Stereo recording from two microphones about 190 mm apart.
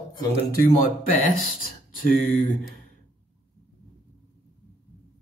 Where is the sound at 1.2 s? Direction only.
50° left (ahead or behind).